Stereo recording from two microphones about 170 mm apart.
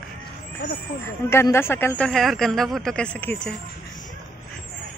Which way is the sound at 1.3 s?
15° left (ahead or behind).